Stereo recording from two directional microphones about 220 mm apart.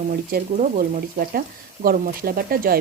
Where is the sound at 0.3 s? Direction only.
40° right (ahead or behind).